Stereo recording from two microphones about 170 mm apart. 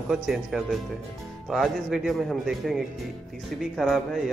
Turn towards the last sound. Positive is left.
turn(degrees=0)  # may be behind; listen again after turning